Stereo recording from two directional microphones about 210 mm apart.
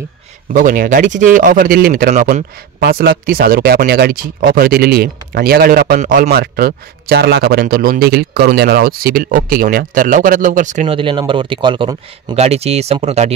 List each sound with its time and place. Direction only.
0.5 s speech: 40° right (ahead or behind)
11.0 s speech: 25° right (ahead or behind)